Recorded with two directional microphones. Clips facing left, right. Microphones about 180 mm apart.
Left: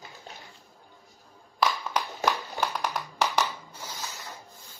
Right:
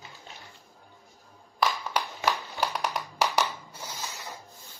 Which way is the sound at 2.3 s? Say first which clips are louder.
Even; 5° right (ahead or behind).